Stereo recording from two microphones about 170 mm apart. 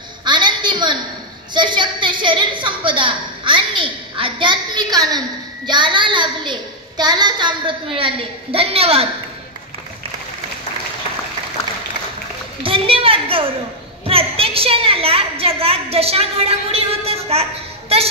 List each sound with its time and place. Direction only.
0.2 s a sound: 25° right (ahead or behind)
1.5 s a woman's voice: 25° right (ahead or behind)
12.6 s a woman's voice: 30° right (ahead or behind)